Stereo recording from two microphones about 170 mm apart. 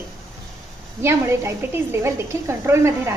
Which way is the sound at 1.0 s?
15° right (ahead or behind).